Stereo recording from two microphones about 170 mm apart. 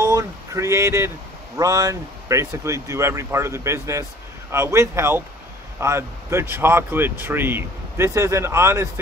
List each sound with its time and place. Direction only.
0.0 s speech: 20° right (ahead or behind)